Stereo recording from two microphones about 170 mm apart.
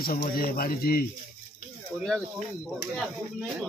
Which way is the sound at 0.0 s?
60° left (ahead or behind).